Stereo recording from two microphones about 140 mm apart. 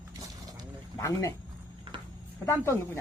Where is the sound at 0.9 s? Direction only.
20° left (ahead or behind).